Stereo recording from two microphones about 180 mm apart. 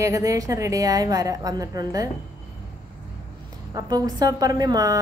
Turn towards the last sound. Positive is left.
turn(degrees=-20)  # may be behind; listen again after turning